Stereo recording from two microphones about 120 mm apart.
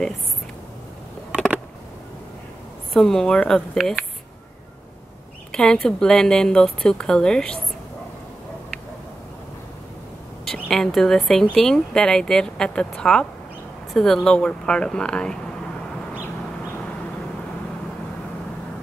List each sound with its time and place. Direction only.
2.9 s a woman's voice: 5° left (ahead or behind)
5.5 s a woman's voice: 5° left (ahead or behind)
10.4 s a woman's voice: 5° left (ahead or behind)